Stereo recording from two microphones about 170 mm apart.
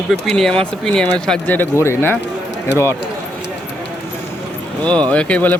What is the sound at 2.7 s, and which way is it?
Speech, 90° left.